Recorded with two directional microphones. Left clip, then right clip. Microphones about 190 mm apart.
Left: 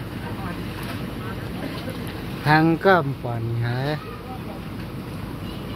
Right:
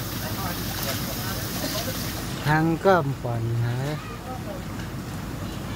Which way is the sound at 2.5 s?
10° left (ahead or behind).